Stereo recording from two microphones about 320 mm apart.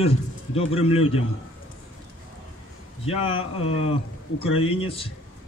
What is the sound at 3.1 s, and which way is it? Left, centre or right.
A man's voice, centre.